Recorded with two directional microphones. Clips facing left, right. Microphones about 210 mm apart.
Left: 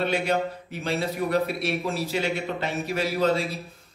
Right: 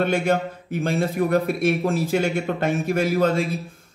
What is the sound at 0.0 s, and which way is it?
Speech, 50° right (ahead or behind).